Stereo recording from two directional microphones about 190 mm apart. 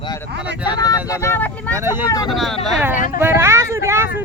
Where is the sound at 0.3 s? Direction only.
70° right (ahead or behind).